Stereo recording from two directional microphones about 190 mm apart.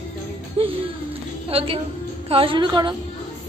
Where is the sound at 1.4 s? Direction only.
30° right (ahead or behind).